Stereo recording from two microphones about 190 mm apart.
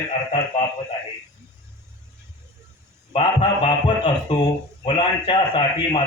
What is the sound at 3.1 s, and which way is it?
A man's voice, 30° left (ahead or behind).